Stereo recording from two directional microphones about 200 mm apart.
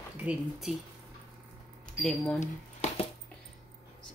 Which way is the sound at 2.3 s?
35° left (ahead or behind).